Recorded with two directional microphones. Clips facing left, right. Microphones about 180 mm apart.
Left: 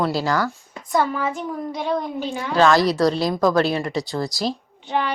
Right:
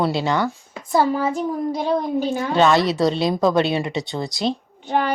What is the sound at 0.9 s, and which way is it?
Speech, 35° right (ahead or behind).